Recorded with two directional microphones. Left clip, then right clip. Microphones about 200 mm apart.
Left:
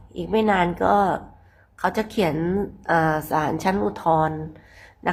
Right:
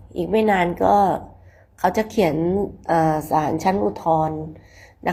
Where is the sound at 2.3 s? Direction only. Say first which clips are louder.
Right 3 dB; 15° left (ahead or behind).